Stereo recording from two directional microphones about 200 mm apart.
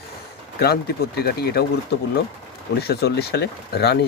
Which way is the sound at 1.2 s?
50° left (ahead or behind).